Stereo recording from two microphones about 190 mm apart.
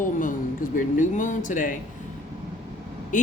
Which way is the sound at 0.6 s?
45° left (ahead or behind).